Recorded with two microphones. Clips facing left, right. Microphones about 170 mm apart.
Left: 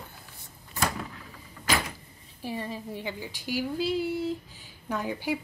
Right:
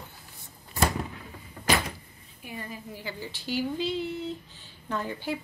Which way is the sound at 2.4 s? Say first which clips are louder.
Left 5 dB; 30° left (ahead or behind).